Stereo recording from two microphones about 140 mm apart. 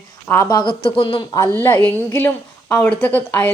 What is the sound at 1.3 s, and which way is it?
A woman's voice, 20° left (ahead or behind).